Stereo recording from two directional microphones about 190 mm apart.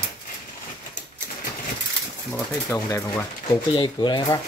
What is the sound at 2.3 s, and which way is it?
Speech, 15° left (ahead or behind).